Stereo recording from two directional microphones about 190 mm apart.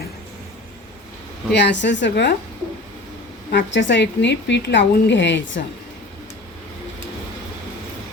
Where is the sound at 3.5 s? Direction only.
70° left (ahead or behind).